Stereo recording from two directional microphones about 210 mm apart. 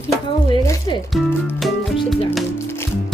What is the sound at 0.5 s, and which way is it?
Speech, 20° left (ahead or behind).